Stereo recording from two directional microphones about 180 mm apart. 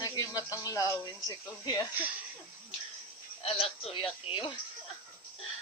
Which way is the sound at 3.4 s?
35° left (ahead or behind).